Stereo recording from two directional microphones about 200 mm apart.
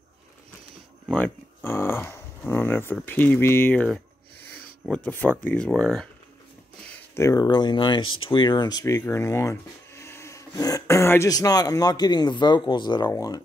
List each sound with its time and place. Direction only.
1.0 s speech: 10° left (ahead or behind)